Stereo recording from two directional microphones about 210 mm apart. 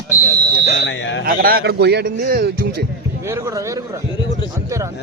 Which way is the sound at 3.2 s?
15° right (ahead or behind).